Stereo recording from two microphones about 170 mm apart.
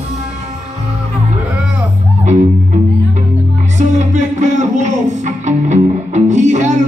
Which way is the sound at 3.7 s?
45° right (ahead or behind).